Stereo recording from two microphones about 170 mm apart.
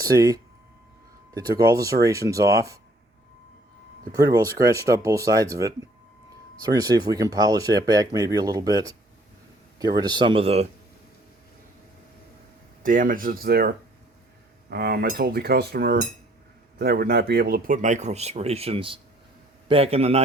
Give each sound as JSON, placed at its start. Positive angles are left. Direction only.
{"t": 0.0, "sound": "speech", "side_deg": -20}
{"t": 4.1, "sound": "speech", "side_deg": -20}
{"t": 12.8, "sound": "a man's voice", "side_deg": -55}